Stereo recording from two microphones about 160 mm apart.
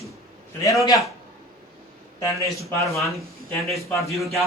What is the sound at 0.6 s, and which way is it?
Speech, 20° left (ahead or behind).